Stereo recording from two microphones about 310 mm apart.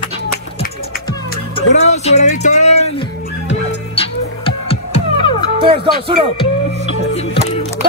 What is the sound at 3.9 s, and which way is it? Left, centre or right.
Music, centre.